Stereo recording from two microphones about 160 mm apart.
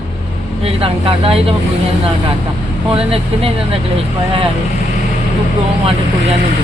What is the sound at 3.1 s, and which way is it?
Speech, 35° right (ahead or behind).